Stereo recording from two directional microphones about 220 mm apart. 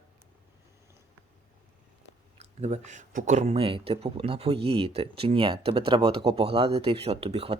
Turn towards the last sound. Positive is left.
turn(degrees=-25)  # may be behind; listen again after turning